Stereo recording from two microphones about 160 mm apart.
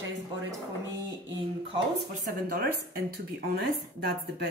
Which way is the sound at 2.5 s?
70° right (ahead or behind).